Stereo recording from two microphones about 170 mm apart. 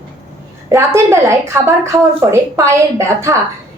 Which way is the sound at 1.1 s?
15° right (ahead or behind).